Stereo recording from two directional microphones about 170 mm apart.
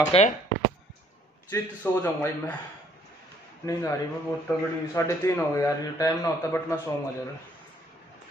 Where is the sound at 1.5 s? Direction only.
10° left (ahead or behind).